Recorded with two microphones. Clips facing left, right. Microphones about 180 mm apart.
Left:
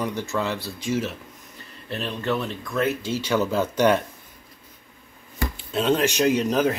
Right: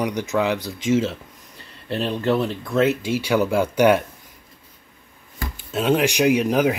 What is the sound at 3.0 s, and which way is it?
Speech, 10° right (ahead or behind).